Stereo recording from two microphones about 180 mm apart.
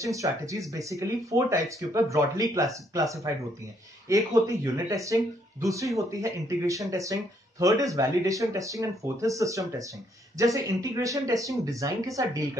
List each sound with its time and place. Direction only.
0.0 s speech: 15° right (ahead or behind)